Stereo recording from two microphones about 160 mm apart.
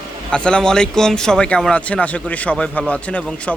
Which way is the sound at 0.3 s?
5° left (ahead or behind).